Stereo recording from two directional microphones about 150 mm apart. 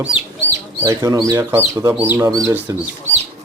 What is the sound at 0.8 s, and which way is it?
Speech, 25° right (ahead or behind).